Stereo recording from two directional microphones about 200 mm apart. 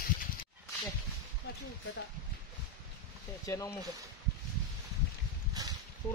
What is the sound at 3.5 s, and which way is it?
Speech, 15° left (ahead or behind).